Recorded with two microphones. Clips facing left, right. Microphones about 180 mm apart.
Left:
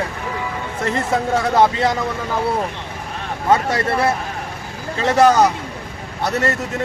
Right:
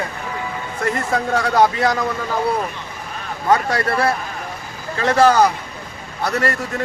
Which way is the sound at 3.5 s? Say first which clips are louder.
Even; 25° left (ahead or behind).